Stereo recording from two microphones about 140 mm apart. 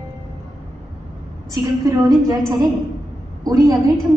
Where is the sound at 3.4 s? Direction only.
25° right (ahead or behind).